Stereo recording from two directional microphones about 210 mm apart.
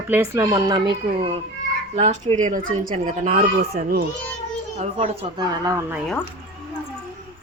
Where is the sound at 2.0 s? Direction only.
35° right (ahead or behind).